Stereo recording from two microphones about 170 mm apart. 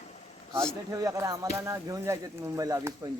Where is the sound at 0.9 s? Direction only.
20° right (ahead or behind).